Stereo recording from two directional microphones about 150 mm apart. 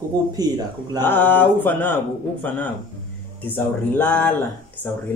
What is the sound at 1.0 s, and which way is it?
Speech, 15° left (ahead or behind).